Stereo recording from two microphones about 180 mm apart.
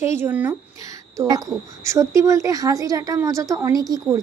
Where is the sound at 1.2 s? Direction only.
20° right (ahead or behind).